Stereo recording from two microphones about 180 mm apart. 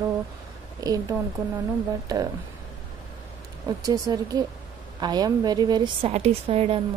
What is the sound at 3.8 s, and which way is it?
A woman's voice, 20° right (ahead or behind).